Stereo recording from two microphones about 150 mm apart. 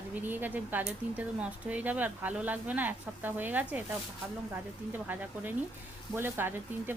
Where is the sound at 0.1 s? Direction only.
10° right (ahead or behind).